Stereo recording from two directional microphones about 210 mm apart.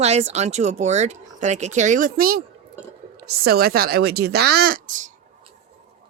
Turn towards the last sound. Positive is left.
turn(degrees=-35)  # may be behind; listen again after turning